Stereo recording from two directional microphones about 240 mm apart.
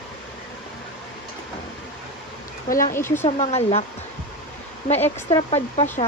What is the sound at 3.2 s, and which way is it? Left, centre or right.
Speech, left.